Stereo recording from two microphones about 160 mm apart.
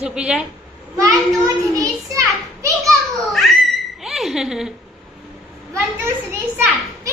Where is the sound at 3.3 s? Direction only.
Centre (ahead or behind).